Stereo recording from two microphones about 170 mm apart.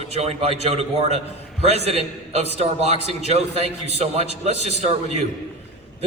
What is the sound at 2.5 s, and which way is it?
A man's voice, 40° right (ahead or behind).